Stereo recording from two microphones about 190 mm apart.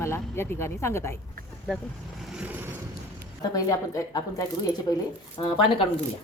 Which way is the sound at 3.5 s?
20° left (ahead or behind).